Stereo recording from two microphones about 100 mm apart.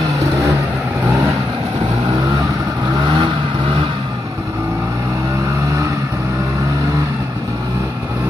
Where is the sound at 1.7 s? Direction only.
70° right (ahead or behind).